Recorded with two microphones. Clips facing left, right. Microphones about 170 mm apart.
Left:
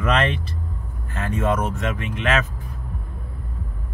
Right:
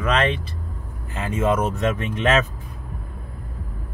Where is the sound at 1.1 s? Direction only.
15° right (ahead or behind).